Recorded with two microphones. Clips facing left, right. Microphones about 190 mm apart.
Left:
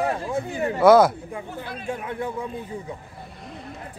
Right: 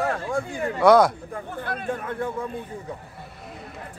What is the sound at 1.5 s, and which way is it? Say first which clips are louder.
Speech: right 3 dB; 55° right (ahead or behind).